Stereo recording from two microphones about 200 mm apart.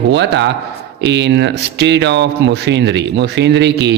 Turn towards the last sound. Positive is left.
turn(degrees=-60)  # may be behind; listen again after turning